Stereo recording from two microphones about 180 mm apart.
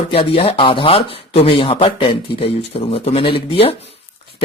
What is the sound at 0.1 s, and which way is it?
A man's voice, 35° left (ahead or behind).